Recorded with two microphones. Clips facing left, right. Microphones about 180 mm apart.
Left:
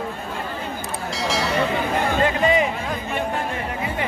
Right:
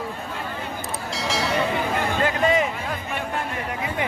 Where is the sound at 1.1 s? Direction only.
Centre (ahead or behind).